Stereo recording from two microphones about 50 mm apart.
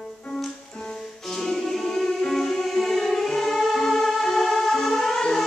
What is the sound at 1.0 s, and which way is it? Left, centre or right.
Music, centre.